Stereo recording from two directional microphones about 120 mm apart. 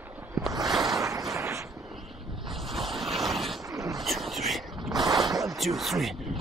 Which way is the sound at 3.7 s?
25° right (ahead or behind).